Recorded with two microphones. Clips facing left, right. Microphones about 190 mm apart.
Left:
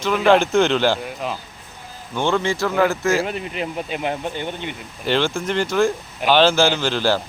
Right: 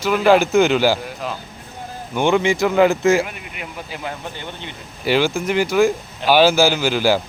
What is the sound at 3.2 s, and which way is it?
Speech, 30° left (ahead or behind).